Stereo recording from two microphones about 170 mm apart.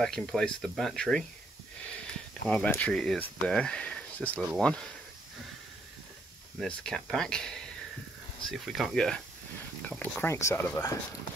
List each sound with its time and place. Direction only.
0.0 s speech: 5° left (ahead or behind)
2.4 s speech: 5° left (ahead or behind)
6.6 s speech: 5° left (ahead or behind)